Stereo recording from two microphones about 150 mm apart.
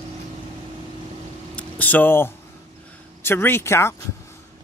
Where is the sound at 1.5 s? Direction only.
10° left (ahead or behind).